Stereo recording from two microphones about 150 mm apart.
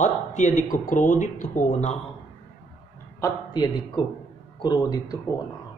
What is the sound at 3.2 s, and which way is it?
Speech, 20° left (ahead or behind).